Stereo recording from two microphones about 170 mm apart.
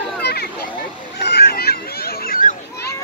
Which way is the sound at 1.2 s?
70° left (ahead or behind).